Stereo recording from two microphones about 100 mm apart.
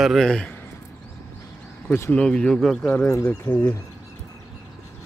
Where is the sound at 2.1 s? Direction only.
10° left (ahead or behind).